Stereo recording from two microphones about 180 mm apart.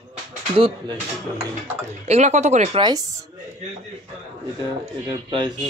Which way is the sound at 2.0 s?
40° right (ahead or behind).